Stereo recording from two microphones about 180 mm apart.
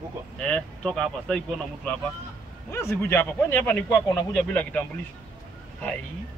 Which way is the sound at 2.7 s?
15° left (ahead or behind).